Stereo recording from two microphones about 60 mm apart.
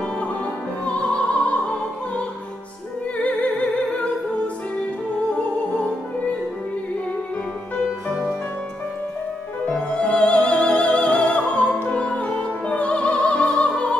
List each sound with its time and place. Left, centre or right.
0.8 s opera: centre
3.2 s music: left
9.7 s opera: centre
11.9 s music: centre
13.1 s opera: centre